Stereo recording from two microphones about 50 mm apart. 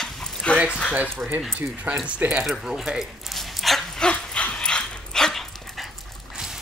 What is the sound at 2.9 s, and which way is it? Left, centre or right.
Dog, centre.